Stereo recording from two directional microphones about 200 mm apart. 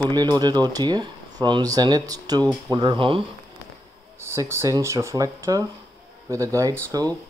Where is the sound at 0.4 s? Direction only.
20° right (ahead or behind).